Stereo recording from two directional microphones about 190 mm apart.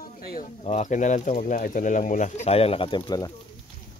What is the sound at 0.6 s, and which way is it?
Speech, 40° left (ahead or behind).